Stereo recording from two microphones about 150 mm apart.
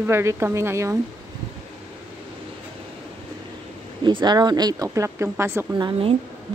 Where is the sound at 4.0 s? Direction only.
30° right (ahead or behind).